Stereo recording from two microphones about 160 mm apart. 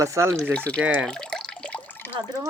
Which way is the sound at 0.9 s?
5° left (ahead or behind).